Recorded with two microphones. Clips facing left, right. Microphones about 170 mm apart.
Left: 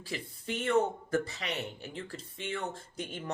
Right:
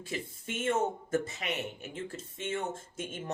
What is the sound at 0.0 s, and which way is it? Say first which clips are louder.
Speech: right 1 dB; 20° right (ahead or behind).